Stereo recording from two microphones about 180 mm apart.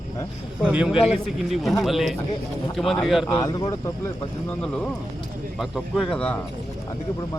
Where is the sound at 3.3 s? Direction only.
20° left (ahead or behind).